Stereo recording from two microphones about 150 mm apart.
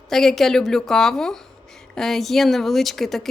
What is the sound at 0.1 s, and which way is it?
A woman's voice, centre (ahead or behind).